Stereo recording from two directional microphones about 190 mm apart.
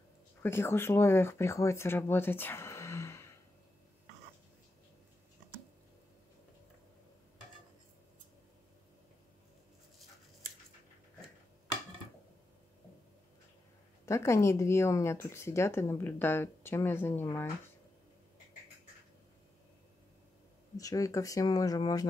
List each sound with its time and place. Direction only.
0.4 s speech: 10° left (ahead or behind)
14.0 s speech: 15° left (ahead or behind)
20.7 s speech: 15° left (ahead or behind)